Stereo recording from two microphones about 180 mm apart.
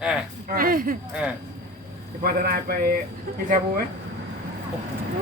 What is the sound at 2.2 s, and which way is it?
Speech, 55° right (ahead or behind).